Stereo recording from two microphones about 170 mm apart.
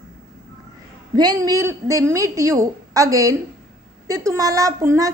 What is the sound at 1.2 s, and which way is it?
A woman's voice, 25° right (ahead or behind).